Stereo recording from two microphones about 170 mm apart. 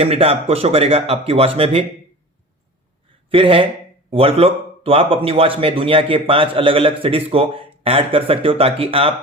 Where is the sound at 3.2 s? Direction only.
30° right (ahead or behind).